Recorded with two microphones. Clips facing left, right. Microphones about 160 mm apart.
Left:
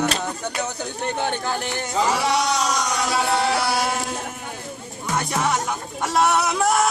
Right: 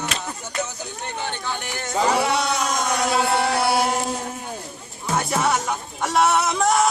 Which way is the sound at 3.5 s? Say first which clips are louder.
Right 2 dB; 25° right (ahead or behind).